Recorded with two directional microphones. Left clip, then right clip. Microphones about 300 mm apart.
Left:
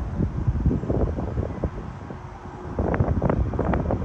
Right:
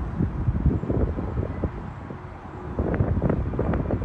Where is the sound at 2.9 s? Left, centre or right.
Centre.